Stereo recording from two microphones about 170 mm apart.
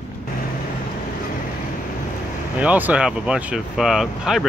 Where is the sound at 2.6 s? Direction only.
10° right (ahead or behind).